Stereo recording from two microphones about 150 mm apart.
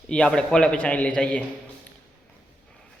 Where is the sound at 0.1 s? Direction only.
5° left (ahead or behind).